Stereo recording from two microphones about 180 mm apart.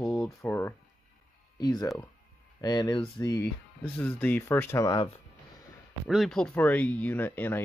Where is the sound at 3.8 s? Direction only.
10° left (ahead or behind).